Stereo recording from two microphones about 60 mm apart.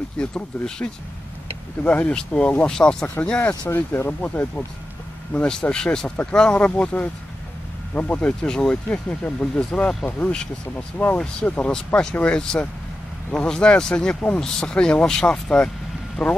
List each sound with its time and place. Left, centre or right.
0.2 s speech: centre
1.9 s speech: left
3.6 s speech: left
5.3 s speech: centre
10.3 s speech: centre
11.4 s speech: left
16.2 s speech: centre